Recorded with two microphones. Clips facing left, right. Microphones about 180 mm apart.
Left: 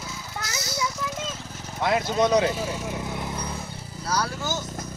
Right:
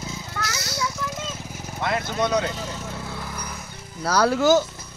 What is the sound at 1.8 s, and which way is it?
Speech, 10° left (ahead or behind).